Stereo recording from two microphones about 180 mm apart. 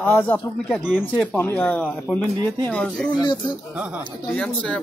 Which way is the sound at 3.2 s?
25° left (ahead or behind).